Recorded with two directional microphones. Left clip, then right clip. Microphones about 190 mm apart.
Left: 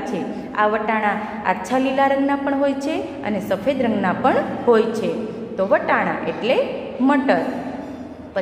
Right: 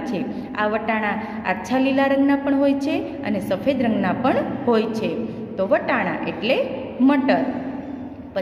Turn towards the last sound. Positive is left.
turn(degrees=-10)  # may be behind; listen again after turning